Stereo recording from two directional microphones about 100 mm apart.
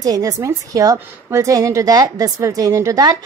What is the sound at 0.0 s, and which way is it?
A woman's voice, 35° right (ahead or behind).